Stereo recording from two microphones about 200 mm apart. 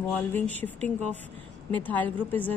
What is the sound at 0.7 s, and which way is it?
Speech, 35° right (ahead or behind).